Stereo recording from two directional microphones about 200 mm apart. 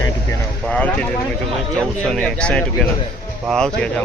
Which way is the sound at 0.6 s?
5° left (ahead or behind).